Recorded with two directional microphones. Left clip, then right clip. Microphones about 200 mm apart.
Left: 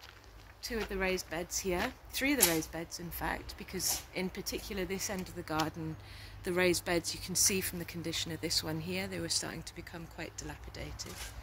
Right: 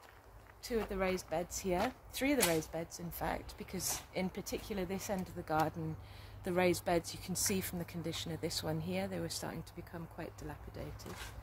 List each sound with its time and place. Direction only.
0.9 s speech: 55° right (ahead or behind); by 10.9 s 35° right (ahead or behind)